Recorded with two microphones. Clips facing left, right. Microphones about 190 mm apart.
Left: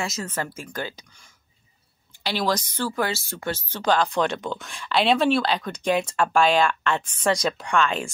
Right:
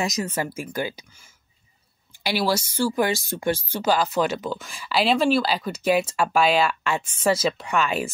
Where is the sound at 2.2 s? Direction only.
10° right (ahead or behind).